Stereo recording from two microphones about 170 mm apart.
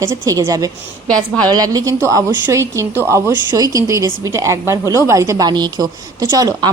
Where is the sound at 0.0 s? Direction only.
20° right (ahead or behind).